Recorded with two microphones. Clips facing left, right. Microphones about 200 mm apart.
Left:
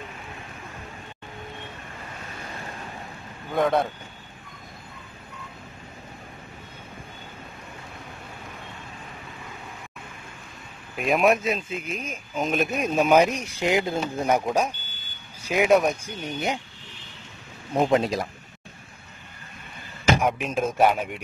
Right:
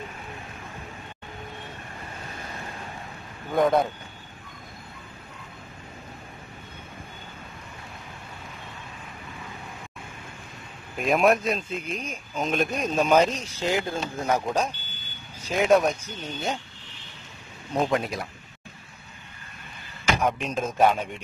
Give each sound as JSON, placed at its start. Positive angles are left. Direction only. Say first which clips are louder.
{"t": 3.5, "sound": "a man's voice", "louder": "right 1 dB", "side_deg": 0}
{"t": 11.0, "sound": "speech", "louder": "even", "side_deg": 0}
{"t": 17.8, "sound": "speech", "louder": "left 7 dB", "side_deg": 25}
{"t": 20.2, "sound": "speech", "louder": "left 2 dB", "side_deg": 5}